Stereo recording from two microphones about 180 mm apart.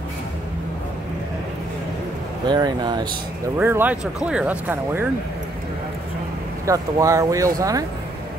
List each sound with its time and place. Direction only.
2.4 s speech: 25° right (ahead or behind)
3.5 s speech: 10° right (ahead or behind)
6.6 s speech: 20° right (ahead or behind)